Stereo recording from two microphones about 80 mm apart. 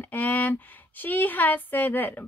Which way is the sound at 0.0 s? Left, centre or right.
Left.